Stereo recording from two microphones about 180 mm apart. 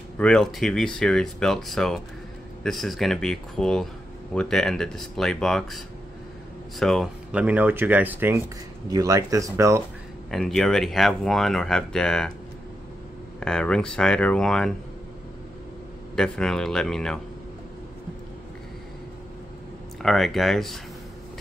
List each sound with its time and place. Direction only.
0.2 s speech: 5° left (ahead or behind)
6.8 s speech: centre (ahead or behind); by 9.8 s 15° right (ahead or behind)
10.3 s speech: centre (ahead or behind)
13.4 s speech: 5° left (ahead or behind)
16.2 s speech: 5° left (ahead or behind)
20.0 s speech: centre (ahead or behind)